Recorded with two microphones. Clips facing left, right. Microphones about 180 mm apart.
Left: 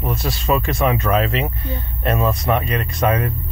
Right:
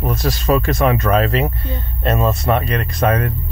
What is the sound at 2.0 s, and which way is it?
Speech, 25° right (ahead or behind).